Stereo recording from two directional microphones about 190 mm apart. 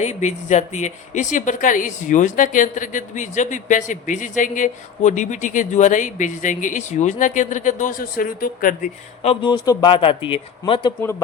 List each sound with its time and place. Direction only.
0.0 s a woman's voice: 35° left (ahead or behind)
9.3 s speech: 25° left (ahead or behind)